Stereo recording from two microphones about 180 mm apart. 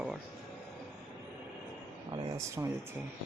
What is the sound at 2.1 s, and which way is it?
Speech, 25° right (ahead or behind).